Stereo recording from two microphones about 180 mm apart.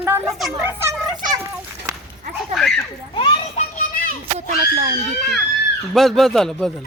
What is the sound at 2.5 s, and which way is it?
Speech, centre (ahead or behind).